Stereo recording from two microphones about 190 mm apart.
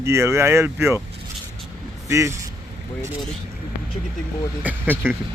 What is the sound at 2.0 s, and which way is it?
Speech, 15° right (ahead or behind).